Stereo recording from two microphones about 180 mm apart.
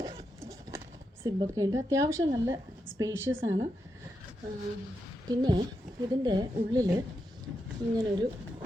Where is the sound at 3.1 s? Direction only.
90° right.